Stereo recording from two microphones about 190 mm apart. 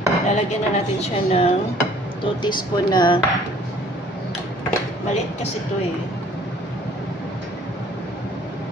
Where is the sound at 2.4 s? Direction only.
25° left (ahead or behind).